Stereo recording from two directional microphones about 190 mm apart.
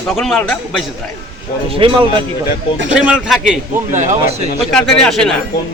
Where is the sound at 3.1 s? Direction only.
Centre (ahead or behind).